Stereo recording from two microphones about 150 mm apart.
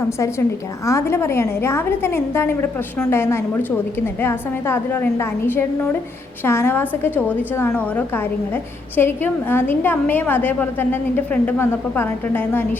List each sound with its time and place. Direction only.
0.9 s a woman's voice: 20° left (ahead or behind)